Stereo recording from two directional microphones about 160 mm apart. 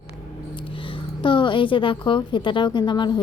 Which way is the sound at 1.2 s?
30° left (ahead or behind).